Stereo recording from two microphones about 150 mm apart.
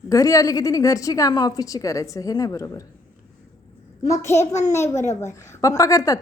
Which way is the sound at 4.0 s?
20° left (ahead or behind).